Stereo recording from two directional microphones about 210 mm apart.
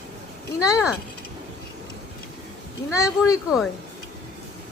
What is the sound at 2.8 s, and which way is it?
Speech, 15° left (ahead or behind).